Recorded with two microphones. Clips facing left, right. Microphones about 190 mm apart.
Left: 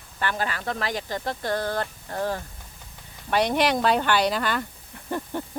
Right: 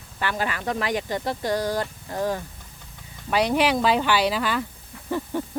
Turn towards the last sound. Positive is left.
turn(degrees=0)  # may be behind; listen again after turning